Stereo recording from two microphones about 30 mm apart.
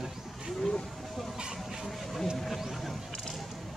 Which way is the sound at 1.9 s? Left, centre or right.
Centre.